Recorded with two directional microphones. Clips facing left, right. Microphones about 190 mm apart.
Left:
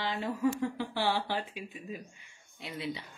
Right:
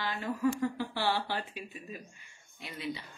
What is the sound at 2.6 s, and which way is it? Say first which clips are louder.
Speech: left 1 dB; 20° left (ahead or behind).